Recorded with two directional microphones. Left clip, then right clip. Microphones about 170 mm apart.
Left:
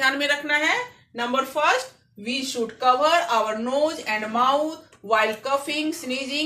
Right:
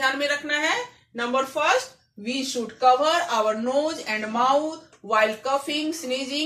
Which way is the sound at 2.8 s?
25° left (ahead or behind).